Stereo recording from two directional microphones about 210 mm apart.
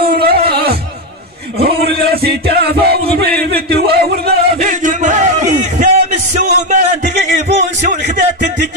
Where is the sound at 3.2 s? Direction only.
50° right (ahead or behind).